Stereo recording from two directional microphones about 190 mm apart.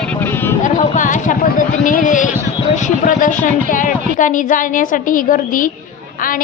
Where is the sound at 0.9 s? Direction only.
40° left (ahead or behind).